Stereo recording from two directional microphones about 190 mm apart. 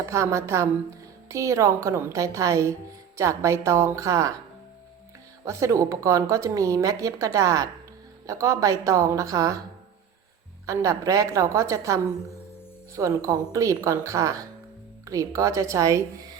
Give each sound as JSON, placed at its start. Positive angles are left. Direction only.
{"t": 0.0, "sound": "speech", "side_deg": -15}
{"t": 5.5, "sound": "speech", "side_deg": -15}
{"t": 10.7, "sound": "speech", "side_deg": -15}
{"t": 13.0, "sound": "speech", "side_deg": -15}